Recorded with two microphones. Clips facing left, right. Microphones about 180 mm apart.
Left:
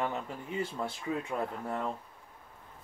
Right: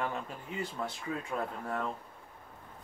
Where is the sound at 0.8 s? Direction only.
20° left (ahead or behind).